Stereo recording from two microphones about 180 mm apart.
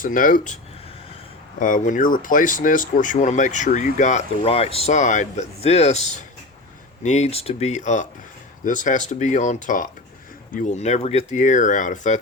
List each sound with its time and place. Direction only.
0.0 s speech: 50° left (ahead or behind)